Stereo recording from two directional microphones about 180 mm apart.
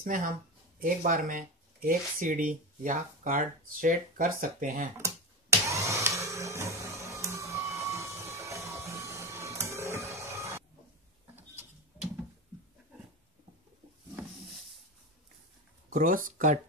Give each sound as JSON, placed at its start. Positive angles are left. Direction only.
{"t": 0.0, "sound": "speech", "side_deg": -50}
{"t": 4.9, "sound": "a sound", "side_deg": -15}
{"t": 15.9, "sound": "speech", "side_deg": -50}